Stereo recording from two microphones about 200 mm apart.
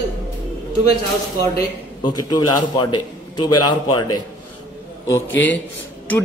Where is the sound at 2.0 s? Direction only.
25° left (ahead or behind).